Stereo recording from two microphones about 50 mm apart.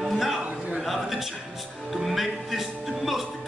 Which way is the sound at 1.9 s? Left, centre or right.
Centre.